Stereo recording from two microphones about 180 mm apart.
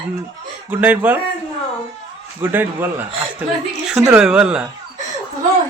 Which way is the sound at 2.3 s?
15° right (ahead or behind).